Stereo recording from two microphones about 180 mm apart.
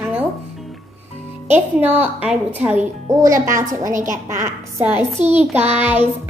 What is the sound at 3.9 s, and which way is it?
Speech, 45° right (ahead or behind).